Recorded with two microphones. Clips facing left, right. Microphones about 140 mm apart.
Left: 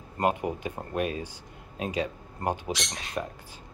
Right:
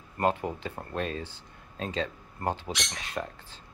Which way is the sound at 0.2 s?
15° left (ahead or behind).